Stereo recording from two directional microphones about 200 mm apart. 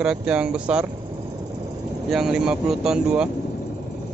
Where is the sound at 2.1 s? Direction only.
Centre (ahead or behind).